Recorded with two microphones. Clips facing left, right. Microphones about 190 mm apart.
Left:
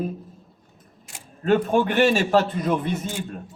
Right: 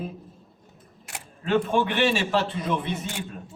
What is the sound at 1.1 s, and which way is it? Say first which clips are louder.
Camera: right 5 dB; 65° right (ahead or behind).